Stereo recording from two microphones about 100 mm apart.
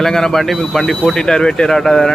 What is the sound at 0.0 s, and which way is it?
A man's voice, 5° left (ahead or behind).